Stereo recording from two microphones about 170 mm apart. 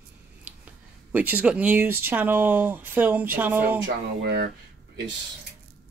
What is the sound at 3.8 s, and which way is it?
Speech, 75° right (ahead or behind).